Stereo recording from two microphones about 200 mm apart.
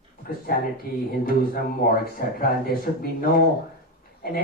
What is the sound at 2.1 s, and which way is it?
Speech, 50° left (ahead or behind).